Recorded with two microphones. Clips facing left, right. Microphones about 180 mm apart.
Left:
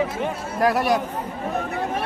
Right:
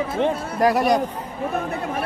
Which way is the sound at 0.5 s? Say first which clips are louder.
Right 1 dB; centre (ahead or behind).